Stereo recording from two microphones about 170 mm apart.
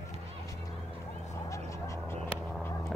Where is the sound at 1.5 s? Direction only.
15° left (ahead or behind).